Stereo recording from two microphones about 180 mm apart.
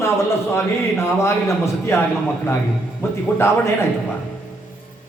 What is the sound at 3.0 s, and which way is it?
Speech, 15° left (ahead or behind).